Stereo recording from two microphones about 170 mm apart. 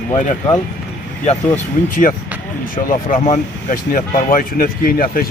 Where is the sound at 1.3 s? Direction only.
50° left (ahead or behind).